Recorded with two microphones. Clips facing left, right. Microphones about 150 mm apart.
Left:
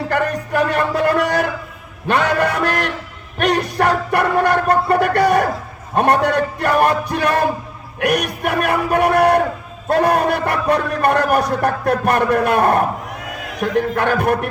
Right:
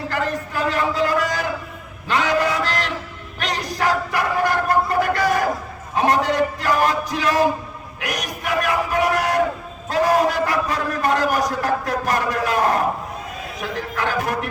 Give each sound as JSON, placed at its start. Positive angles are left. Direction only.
{"t": 0.1, "sound": "a sound", "side_deg": 60}
{"t": 3.3, "sound": "music", "side_deg": 60}
{"t": 5.9, "sound": "a man's voice", "side_deg": 60}